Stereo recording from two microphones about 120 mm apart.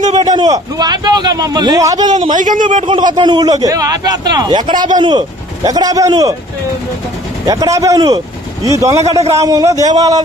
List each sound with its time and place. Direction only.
0.1 s a man's voice: 35° right (ahead or behind)
2.3 s a man's voice: 90° right
2.9 s a man's voice: 40° right (ahead or behind)
7.4 s a man's voice: 30° right (ahead or behind)